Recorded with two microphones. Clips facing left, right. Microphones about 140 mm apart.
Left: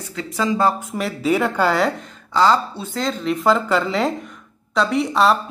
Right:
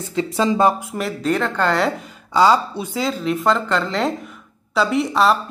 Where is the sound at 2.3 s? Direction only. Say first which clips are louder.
Right 2 dB; 10° right (ahead or behind).